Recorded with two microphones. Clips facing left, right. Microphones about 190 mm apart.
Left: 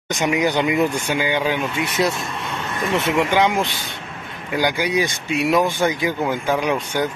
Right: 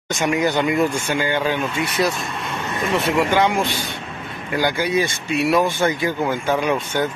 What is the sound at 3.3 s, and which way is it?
Speech, 15° left (ahead or behind).